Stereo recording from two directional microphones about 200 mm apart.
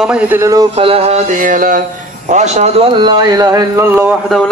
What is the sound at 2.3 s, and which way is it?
Speech, 35° right (ahead or behind).